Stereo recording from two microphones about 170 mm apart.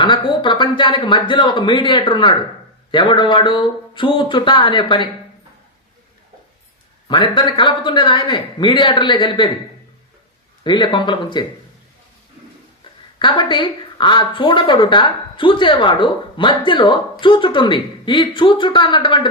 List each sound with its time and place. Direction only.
0.0 s speech: 25° left (ahead or behind)
7.1 s speech: 25° left (ahead or behind)
10.6 s speech: 25° left (ahead or behind)
13.1 s speech: 30° left (ahead or behind)